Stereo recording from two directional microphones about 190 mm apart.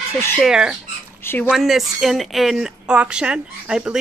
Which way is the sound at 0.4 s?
5° right (ahead or behind).